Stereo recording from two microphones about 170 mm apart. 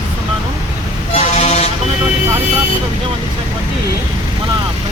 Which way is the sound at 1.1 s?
40° left (ahead or behind).